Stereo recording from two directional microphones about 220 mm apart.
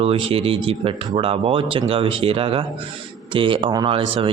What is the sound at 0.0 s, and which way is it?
A man's voice, 25° right (ahead or behind).